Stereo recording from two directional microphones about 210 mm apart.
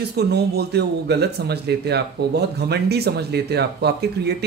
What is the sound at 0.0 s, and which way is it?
Speech, 50° right (ahead or behind).